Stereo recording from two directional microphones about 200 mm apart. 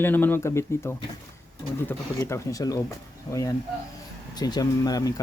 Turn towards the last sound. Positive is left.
turn(degrees=20)  # may be behind; listen again after turning